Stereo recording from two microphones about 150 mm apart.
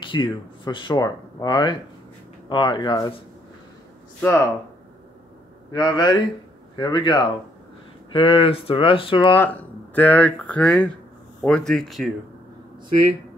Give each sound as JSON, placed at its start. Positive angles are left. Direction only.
{"t": 0.0, "sound": "speech", "side_deg": 30}
{"t": 4.2, "sound": "speech", "side_deg": 15}
{"t": 5.7, "sound": "a man's voice", "side_deg": 30}
{"t": 9.9, "sound": "speech", "side_deg": 10}